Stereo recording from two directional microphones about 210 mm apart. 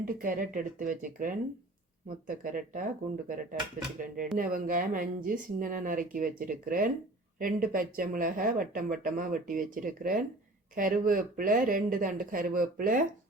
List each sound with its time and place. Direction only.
0.0 s speech: 40° right (ahead or behind)